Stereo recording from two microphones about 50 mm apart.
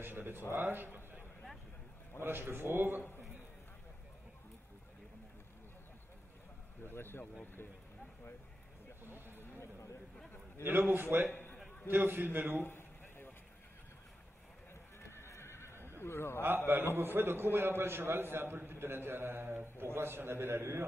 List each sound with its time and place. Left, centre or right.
0.0 s a man's voice: right
2.2 s a man's voice: right
6.8 s speech: left
9.0 s a sound: right
10.6 s a man's voice: right
12.6 s a sound: left
14.7 s neigh: left
16.0 s a man's voice: left
16.3 s a man's voice: right